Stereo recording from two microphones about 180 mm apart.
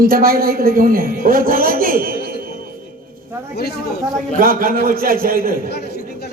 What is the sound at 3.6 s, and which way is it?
Speech, 60° left (ahead or behind).